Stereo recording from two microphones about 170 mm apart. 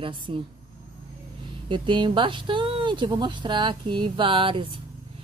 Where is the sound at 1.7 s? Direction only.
30° right (ahead or behind).